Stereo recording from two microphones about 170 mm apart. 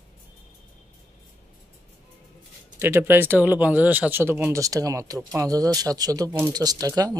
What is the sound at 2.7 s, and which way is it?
Speech, 15° right (ahead or behind).